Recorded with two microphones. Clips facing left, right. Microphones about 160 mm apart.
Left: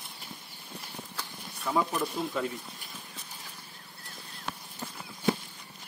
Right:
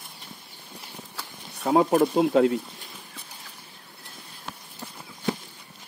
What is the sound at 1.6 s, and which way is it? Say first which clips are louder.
Speech: right 10 dB; 55° right (ahead or behind).